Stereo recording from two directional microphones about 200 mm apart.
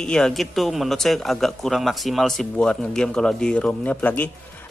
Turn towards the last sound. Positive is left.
turn(degrees=10)  # may be behind; listen again after turning